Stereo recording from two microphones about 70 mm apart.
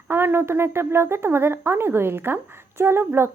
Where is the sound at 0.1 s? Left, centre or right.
Right.